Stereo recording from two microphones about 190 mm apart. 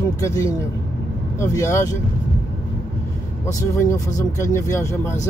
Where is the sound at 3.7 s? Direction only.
15° left (ahead or behind).